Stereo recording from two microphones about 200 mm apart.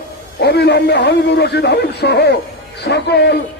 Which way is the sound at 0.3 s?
55° left (ahead or behind).